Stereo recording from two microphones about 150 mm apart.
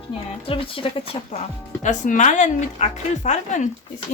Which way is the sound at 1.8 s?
55° left (ahead or behind).